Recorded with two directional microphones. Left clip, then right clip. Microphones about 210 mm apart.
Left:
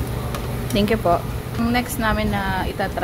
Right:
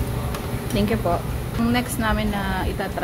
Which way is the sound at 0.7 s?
25° left (ahead or behind).